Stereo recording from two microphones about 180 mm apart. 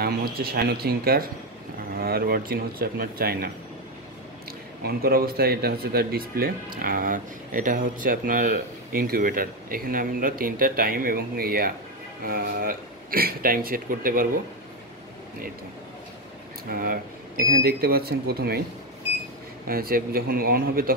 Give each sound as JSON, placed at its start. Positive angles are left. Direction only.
{"t": 0.0, "sound": "a man's voice", "side_deg": -55}
{"t": 4.5, "sound": "a man's voice", "side_deg": -55}
{"t": 16.7, "sound": "a man's voice", "side_deg": -55}
{"t": 19.7, "sound": "a man's voice", "side_deg": -55}